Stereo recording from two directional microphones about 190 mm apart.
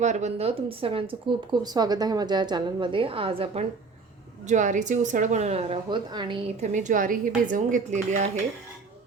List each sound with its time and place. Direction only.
0.0 s a woman's voice: 35° right (ahead or behind)